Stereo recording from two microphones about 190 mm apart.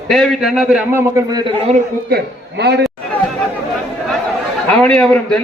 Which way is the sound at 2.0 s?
60° right (ahead or behind).